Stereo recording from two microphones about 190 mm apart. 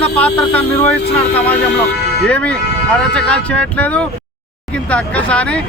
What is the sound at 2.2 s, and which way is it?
Speech, 5° left (ahead or behind).